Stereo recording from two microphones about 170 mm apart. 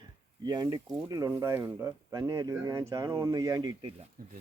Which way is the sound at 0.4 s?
25° right (ahead or behind).